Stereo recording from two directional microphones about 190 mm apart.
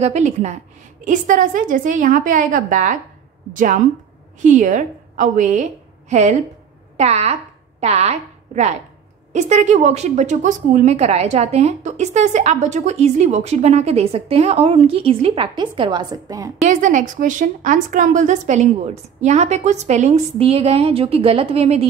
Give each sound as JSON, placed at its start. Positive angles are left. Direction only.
{"t": 0.0, "sound": "a woman's voice", "side_deg": -35}
{"t": 16.6, "sound": "a woman's voice", "side_deg": -40}